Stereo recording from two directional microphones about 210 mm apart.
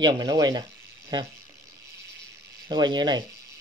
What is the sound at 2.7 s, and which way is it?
Speech, 20° right (ahead or behind).